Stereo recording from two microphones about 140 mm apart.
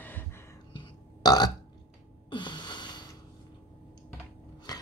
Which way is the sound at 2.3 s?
35° left (ahead or behind).